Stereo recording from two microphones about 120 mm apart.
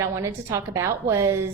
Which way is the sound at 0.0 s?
25° right (ahead or behind).